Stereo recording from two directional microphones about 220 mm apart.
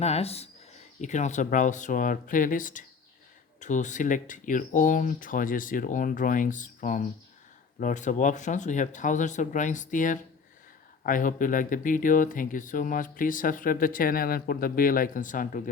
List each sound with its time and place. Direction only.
0.0 s speech: 30° left (ahead or behind)